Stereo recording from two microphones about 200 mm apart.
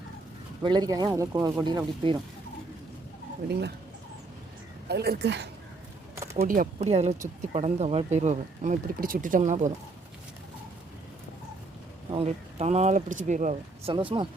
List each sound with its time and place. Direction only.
0.6 s speech: 20° right (ahead or behind)
4.9 s speech: 55° right (ahead or behind)
6.3 s speech: 45° right (ahead or behind)
6.7 s speech: 30° right (ahead or behind)
12.1 s speech: 30° right (ahead or behind)
13.9 s speech: 25° right (ahead or behind)